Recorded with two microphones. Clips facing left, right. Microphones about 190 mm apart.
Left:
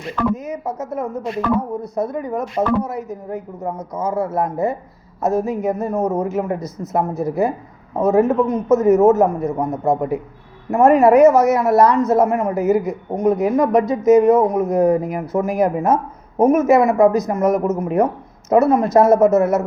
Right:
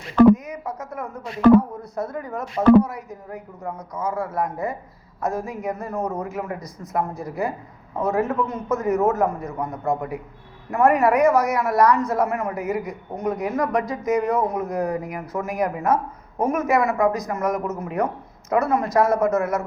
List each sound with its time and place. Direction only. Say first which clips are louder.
0.3 s speech: left 6 dB; 25° left (ahead or behind)